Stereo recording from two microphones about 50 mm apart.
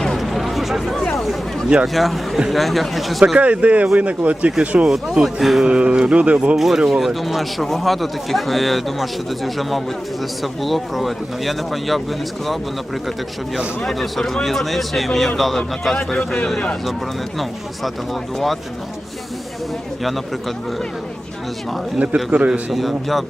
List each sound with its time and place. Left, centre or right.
0.1 s a sound: centre
1.9 s a man's voice: centre
3.3 s speech: right
4.9 s speech: centre
5.6 s speech: right
6.6 s a man's voice: centre
13.8 s a man's voice: centre
17.8 s a man's voice: centre
21.9 s speech: right
22.7 s a man's voice: centre